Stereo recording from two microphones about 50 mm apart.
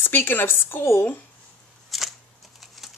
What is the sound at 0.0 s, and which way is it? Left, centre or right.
Speech, left.